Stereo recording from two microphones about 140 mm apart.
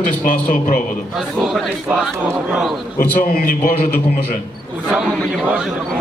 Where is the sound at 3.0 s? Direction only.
90° left.